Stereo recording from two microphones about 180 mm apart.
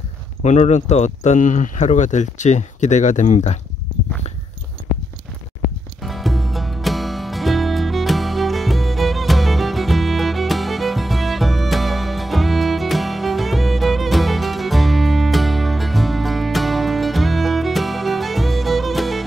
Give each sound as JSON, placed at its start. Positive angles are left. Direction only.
{"t": 0.4, "sound": "speech", "side_deg": 40}
{"t": 6.0, "sound": "music", "side_deg": 0}